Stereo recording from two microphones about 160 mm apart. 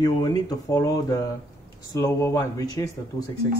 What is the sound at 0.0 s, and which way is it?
Speech, 25° left (ahead or behind).